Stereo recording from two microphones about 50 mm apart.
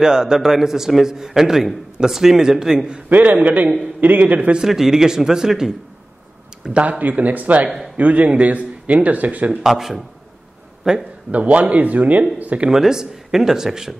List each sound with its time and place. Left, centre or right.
0.0 s a man's voice: centre
3.1 s a man's voice: right
4.6 s a man's voice: centre
6.6 s speech: right
9.6 s a man's voice: centre
11.3 s speech: right
12.6 s a man's voice: centre